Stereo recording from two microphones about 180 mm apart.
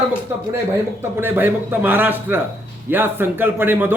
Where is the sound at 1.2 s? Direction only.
10° right (ahead or behind).